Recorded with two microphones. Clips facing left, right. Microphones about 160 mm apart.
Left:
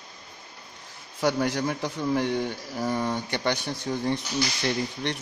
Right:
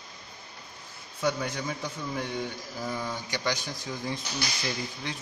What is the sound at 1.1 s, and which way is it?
A man's voice, 75° left (ahead or behind).